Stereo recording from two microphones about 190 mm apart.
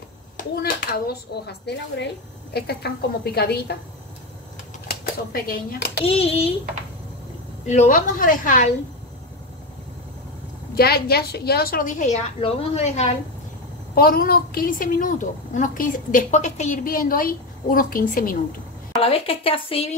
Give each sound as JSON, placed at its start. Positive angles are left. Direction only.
{"t": 0.4, "sound": "a child's voice", "side_deg": 50}
{"t": 4.8, "sound": "a child's voice", "side_deg": 50}
{"t": 6.0, "sound": "a child's voice", "side_deg": 30}
{"t": 7.6, "sound": "a woman's voice", "side_deg": 40}
{"t": 10.7, "sound": "a woman's voice", "side_deg": 55}
{"t": 13.9, "sound": "a woman's voice", "side_deg": 50}
{"t": 19.0, "sound": "speech", "side_deg": 30}